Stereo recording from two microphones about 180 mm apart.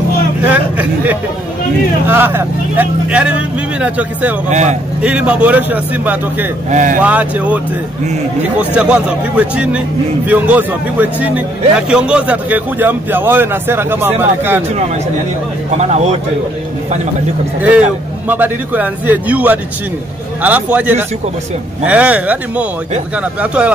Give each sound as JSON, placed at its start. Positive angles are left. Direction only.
{"t": 0.5, "sound": "vehicle", "side_deg": -10}
{"t": 2.0, "sound": "a man's voice", "side_deg": -10}
{"t": 4.5, "sound": "speech", "side_deg": -40}
{"t": 5.0, "sound": "a man's voice", "side_deg": -5}
{"t": 6.7, "sound": "speech", "side_deg": -45}
{"t": 7.0, "sound": "a man's voice", "side_deg": -10}
{"t": 15.8, "sound": "speech", "side_deg": -40}
{"t": 17.6, "sound": "a man's voice", "side_deg": -10}